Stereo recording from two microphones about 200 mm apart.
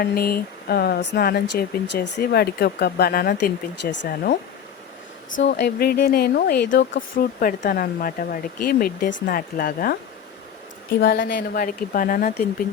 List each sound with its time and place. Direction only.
0.0 s speech: 50° left (ahead or behind)
5.5 s speech: 55° left (ahead or behind)
7.3 s speech: 45° left (ahead or behind)
11.0 s speech: 55° left (ahead or behind)